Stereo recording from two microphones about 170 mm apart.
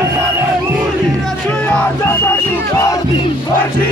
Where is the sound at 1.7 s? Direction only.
10° left (ahead or behind).